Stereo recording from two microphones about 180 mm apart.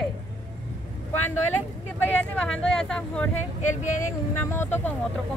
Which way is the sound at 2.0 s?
5° left (ahead or behind).